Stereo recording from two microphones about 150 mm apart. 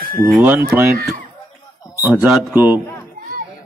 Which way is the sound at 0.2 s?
10° right (ahead or behind).